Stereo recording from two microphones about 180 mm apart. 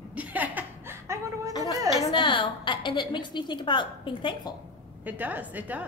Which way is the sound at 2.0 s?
25° left (ahead or behind).